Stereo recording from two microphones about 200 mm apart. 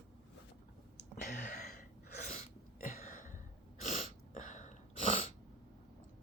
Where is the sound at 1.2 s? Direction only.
40° left (ahead or behind).